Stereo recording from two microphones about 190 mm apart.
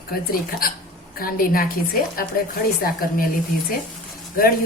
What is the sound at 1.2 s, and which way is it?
Speech, 50° left (ahead or behind).